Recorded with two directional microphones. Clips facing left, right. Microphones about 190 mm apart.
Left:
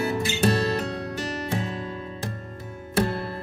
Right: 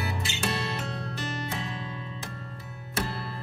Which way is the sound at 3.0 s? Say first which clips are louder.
Left 9 dB; 50° left (ahead or behind).